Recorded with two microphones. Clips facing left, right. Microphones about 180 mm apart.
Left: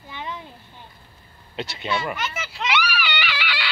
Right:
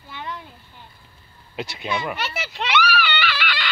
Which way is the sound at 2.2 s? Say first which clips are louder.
Right 1 dB; 70° right (ahead or behind).